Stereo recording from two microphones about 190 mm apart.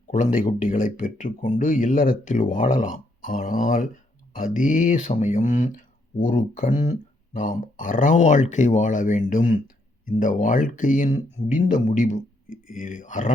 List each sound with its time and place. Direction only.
0.1 s speech: 40° left (ahead or behind)